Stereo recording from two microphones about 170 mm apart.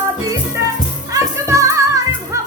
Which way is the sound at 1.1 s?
20° right (ahead or behind).